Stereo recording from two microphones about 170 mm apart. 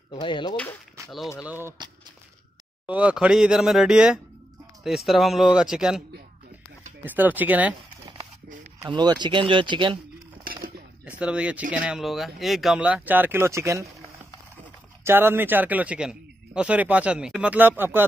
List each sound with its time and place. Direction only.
0.1 s speech: 30° left (ahead or behind)
1.0 s a sound: 15° right (ahead or behind)
1.4 s a man's voice: 10° right (ahead or behind)
2.9 s a man's voice: 10° right (ahead or behind)
8.8 s speech: 25° right (ahead or behind)
10.4 s a sound: 60° right (ahead or behind)
11.1 s a man's voice: 5° right (ahead or behind)
15.0 s a man's voice: 10° right (ahead or behind)